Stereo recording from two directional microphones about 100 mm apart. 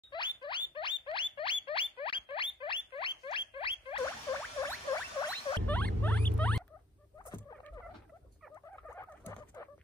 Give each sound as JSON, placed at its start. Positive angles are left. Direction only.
{"t": 0.1, "sound": "rodents", "side_deg": 50}
{"t": 4.0, "sound": "rodents", "side_deg": 30}
{"t": 5.3, "sound": "rodents", "side_deg": 15}
{"t": 8.8, "sound": "fowl", "side_deg": 25}